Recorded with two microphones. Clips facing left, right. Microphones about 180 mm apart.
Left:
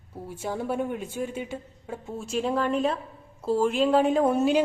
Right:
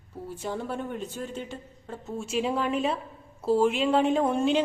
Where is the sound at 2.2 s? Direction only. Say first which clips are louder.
Left 1 dB; 5° right (ahead or behind).